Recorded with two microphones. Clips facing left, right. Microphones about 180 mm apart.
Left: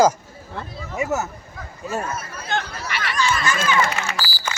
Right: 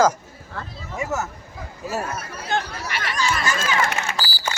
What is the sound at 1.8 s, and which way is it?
Speech, 5° right (ahead or behind).